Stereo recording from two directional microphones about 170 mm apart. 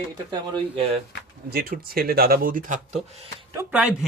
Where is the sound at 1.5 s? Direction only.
65° right (ahead or behind); by 3.2 s 40° right (ahead or behind).